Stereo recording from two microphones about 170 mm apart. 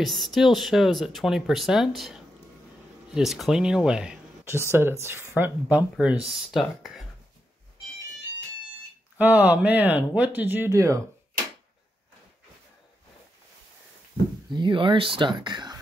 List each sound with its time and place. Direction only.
0.0 s speech: centre (ahead or behind)
9.2 s speech: 10° right (ahead or behind)
14.5 s speech: 30° right (ahead or behind)